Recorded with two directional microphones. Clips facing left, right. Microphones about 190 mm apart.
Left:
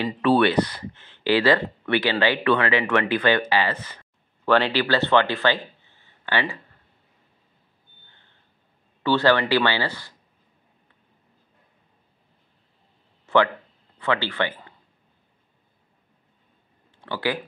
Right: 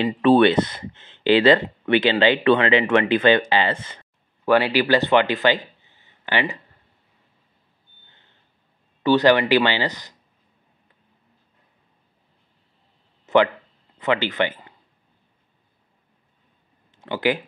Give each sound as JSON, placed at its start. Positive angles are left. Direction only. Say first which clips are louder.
{"t": 0.0, "sound": "speech", "louder": "right 4 dB", "side_deg": -25}
{"t": 4.5, "sound": "speech", "louder": "right 3 dB", "side_deg": -10}
{"t": 9.0, "sound": "speech", "louder": "right 3 dB", "side_deg": -15}
{"t": 13.2, "sound": "a sound", "louder": "right 3 dB", "side_deg": -15}
{"t": 13.9, "sound": "speech", "louder": "right 3 dB", "side_deg": -20}
{"t": 17.0, "sound": "speech", "louder": "right 4 dB", "side_deg": -20}